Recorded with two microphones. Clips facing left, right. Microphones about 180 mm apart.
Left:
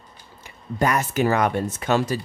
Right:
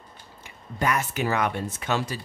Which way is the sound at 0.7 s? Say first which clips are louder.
Left 5 dB; 40° left (ahead or behind).